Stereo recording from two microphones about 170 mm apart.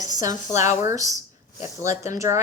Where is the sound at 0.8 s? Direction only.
20° right (ahead or behind).